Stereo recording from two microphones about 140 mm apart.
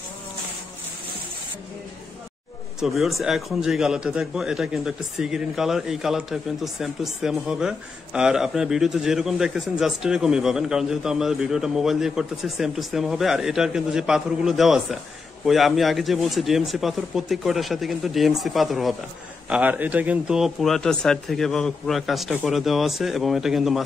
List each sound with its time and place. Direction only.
2.8 s a man's voice: centre (ahead or behind)
19.5 s a man's voice: 10° right (ahead or behind)